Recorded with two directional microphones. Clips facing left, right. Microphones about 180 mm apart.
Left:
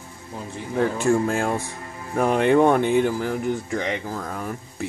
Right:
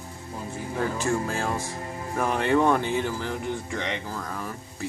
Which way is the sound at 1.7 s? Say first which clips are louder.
Right 3 dB; 35° right (ahead or behind).